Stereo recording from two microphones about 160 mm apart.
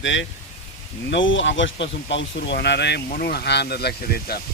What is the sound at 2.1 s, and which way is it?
Speech, 90° left.